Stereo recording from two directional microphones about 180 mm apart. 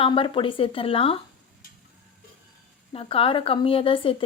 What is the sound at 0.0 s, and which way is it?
Speech, 30° left (ahead or behind).